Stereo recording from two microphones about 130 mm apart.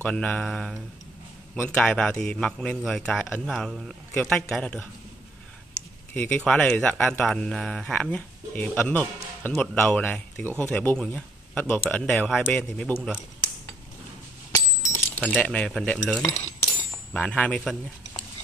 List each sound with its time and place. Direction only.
0.0 s a man's voice: 10° left (ahead or behind)
6.1 s speech: 10° left (ahead or behind)
14.5 s a sound: 25° left (ahead or behind)
15.1 s speech: 10° left (ahead or behind)